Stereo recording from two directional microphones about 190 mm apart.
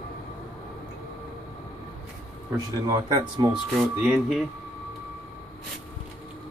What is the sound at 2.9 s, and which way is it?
Speech, 20° right (ahead or behind).